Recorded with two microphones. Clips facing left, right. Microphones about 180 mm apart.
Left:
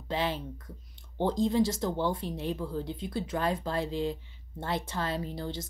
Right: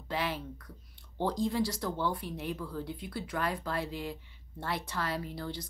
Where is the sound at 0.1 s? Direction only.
25° left (ahead or behind).